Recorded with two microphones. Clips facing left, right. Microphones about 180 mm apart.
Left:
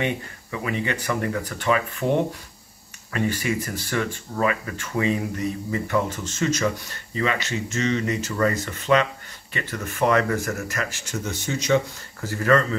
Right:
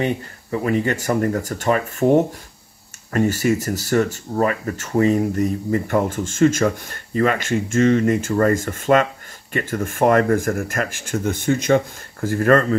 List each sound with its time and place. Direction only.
0.0 s speech: 40° right (ahead or behind)